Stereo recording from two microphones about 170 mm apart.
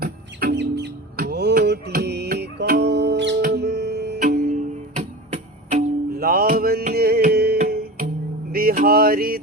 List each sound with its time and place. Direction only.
0.0 s music: 65° right (ahead or behind); by 3.3 s 85° right
3.4 s music: 75° right (ahead or behind)
4.2 s music: 50° right (ahead or behind)
6.1 s music: 60° right (ahead or behind)
8.5 s a sound: 60° right (ahead or behind)